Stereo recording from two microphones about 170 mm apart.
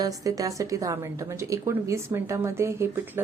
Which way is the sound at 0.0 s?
20° right (ahead or behind).